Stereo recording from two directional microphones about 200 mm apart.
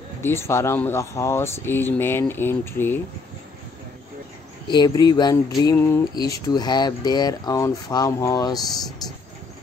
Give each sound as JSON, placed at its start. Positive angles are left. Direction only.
{"t": 0.2, "sound": "speech", "side_deg": 10}
{"t": 4.6, "sound": "speech", "side_deg": 20}